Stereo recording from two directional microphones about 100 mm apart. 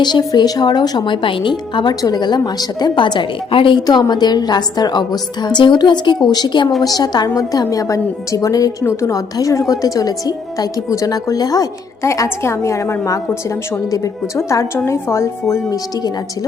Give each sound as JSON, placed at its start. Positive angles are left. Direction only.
{"t": 0.0, "sound": "speech", "side_deg": 45}
{"t": 4.1, "sound": "a woman's voice", "side_deg": 45}